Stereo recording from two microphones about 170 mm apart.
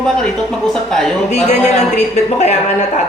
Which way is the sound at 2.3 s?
40° left (ahead or behind).